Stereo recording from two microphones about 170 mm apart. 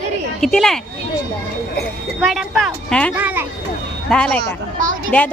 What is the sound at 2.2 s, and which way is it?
Speech, centre (ahead or behind).